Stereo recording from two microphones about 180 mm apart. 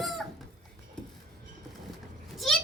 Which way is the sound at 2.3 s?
Centre (ahead or behind).